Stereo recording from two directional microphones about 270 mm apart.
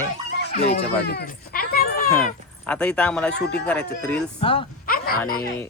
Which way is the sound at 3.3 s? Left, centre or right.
Left.